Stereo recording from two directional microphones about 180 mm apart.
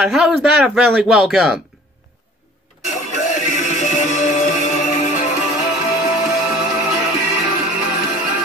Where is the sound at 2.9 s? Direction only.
45° left (ahead or behind).